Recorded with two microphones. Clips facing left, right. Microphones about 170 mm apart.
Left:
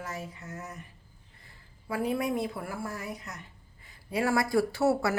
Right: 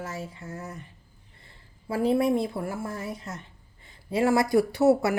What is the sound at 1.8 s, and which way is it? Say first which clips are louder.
A woman's voice: right 6 dB; 30° right (ahead or behind).